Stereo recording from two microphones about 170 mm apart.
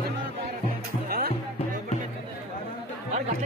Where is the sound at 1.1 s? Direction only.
60° right (ahead or behind).